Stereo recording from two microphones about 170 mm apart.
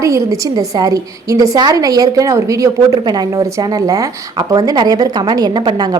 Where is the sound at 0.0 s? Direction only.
20° right (ahead or behind).